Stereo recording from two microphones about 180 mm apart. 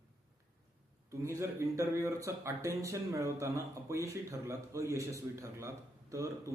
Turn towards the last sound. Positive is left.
turn(degrees=-15)  # may be behind; listen again after turning